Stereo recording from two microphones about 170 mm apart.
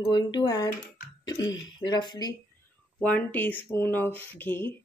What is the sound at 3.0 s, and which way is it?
Speech, 10° left (ahead or behind).